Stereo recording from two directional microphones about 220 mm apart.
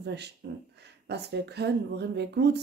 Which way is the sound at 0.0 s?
50° right (ahead or behind).